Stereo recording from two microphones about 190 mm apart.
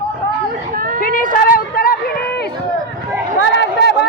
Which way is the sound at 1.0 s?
45° left (ahead or behind).